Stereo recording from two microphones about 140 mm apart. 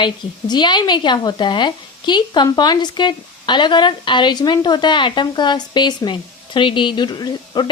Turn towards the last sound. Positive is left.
turn(degrees=30)  # may be behind; listen again after turning